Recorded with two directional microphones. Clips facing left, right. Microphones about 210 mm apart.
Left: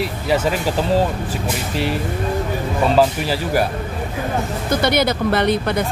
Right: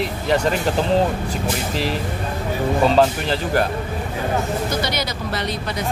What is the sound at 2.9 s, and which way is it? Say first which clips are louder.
Speech: left 1 dB; 5° left (ahead or behind).